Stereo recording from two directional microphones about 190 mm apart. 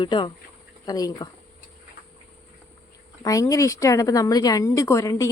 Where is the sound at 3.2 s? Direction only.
15° left (ahead or behind).